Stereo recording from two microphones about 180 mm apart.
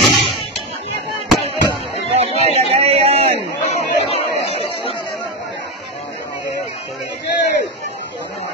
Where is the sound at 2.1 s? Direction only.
35° right (ahead or behind).